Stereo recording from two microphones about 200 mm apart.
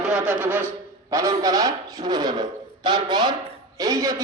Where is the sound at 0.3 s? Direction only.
10° right (ahead or behind).